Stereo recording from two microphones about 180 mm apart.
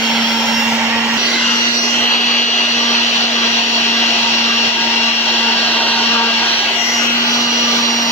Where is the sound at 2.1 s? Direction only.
45° left (ahead or behind).